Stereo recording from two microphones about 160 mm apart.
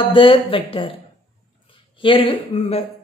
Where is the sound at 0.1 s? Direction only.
35° left (ahead or behind).